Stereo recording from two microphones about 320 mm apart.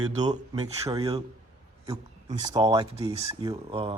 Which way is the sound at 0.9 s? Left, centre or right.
Centre.